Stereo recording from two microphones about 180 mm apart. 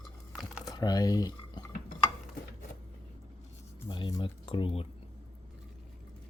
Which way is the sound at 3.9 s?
25° left (ahead or behind).